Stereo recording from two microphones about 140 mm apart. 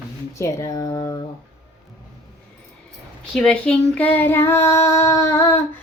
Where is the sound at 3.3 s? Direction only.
5° left (ahead or behind).